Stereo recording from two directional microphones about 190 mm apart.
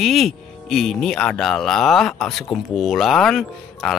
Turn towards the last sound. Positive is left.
turn(degrees=0)  # may be behind; listen again after turning